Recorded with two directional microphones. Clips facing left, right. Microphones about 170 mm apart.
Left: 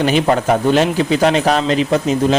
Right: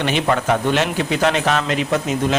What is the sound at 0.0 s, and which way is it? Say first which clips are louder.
A man's voice: left 5 dB; 35° left (ahead or behind).